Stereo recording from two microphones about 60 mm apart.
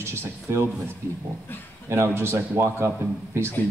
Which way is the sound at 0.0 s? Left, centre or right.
Right.